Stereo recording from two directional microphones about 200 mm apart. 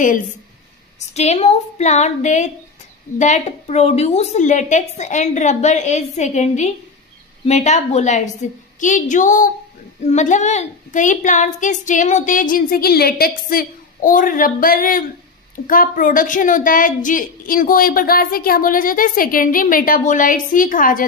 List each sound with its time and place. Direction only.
1.1 s a woman's voice: 35° left (ahead or behind)